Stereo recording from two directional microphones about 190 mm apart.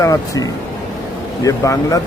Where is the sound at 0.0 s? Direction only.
20° left (ahead or behind).